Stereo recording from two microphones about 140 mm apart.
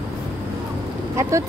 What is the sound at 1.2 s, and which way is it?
Speech, 20° right (ahead or behind).